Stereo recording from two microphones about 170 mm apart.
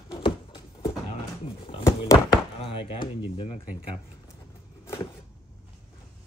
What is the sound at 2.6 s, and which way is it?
Speech, 35° left (ahead or behind).